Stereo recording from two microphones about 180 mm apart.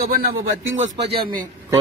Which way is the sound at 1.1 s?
30° right (ahead or behind).